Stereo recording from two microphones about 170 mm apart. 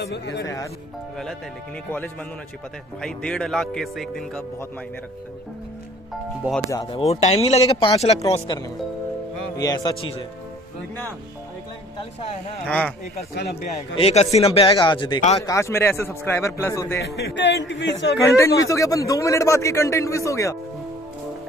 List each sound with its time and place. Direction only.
0.0 s speech: 85° left
3.0 s speech: 5° left (ahead or behind)
6.7 s speech: 30° left (ahead or behind)
8.3 s speech: 25° left (ahead or behind)
12.6 s a man's voice: 5° left (ahead or behind)
13.3 s speech: 65° left (ahead or behind)
13.7 s a man's voice: 40° left (ahead or behind); by 17.0 s 15° left (ahead or behind)
17.0 s speech: 85° left
18.3 s a man's voice: 20° left (ahead or behind)